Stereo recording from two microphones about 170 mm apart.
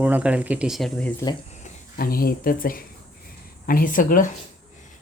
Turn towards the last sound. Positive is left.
turn(degrees=50)  # may be behind; listen again after turning